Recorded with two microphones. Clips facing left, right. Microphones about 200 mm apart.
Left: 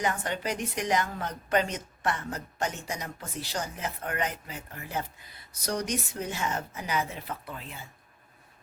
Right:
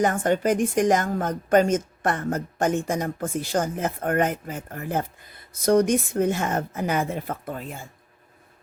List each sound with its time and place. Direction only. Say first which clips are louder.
0.0 s a woman's voice: right 9 dB; 50° right (ahead or behind)